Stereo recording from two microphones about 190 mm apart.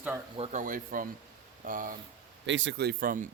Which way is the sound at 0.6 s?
45° right (ahead or behind).